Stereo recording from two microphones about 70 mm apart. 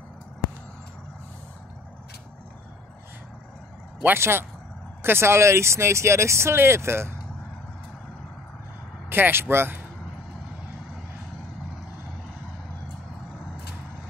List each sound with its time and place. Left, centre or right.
4.0 s speech: right
9.1 s speech: right